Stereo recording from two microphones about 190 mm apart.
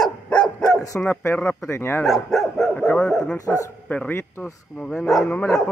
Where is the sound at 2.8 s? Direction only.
5° left (ahead or behind).